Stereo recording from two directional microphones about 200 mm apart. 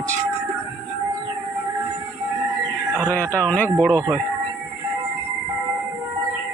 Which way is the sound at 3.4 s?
5° left (ahead or behind).